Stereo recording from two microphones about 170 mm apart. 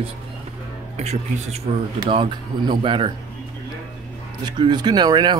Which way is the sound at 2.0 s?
30° right (ahead or behind).